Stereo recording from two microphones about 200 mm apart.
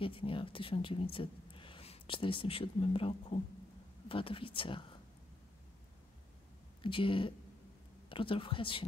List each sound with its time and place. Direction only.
0.0 s speech: 25° left (ahead or behind)
6.8 s speech: 25° left (ahead or behind)